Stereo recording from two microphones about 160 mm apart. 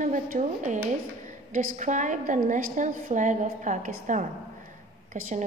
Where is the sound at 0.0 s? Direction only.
55° right (ahead or behind).